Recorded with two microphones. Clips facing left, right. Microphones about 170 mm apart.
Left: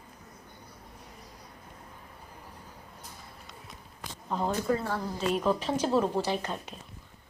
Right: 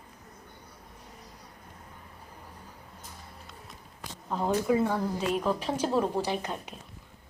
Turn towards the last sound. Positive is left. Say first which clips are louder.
# even
turn(degrees=-10)  # may be behind; listen again after turning